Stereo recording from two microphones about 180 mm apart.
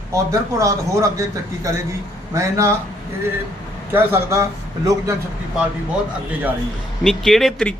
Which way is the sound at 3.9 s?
15° right (ahead or behind).